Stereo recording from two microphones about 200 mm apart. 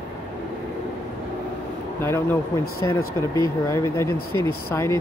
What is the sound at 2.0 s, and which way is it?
Speech, 10° left (ahead or behind).